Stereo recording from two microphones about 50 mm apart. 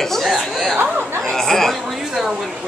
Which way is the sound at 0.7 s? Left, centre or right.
Right.